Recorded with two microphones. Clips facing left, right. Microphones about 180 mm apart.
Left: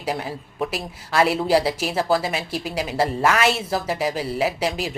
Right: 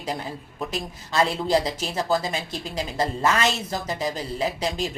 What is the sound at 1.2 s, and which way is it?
Speech, 10° left (ahead or behind).